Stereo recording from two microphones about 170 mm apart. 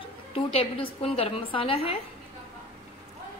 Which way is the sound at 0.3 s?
35° left (ahead or behind).